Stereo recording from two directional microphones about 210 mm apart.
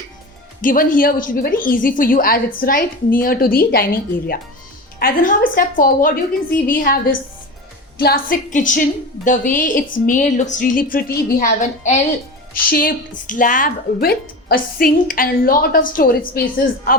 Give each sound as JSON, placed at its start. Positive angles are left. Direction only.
{"t": 0.6, "sound": "a woman's voice", "side_deg": 40}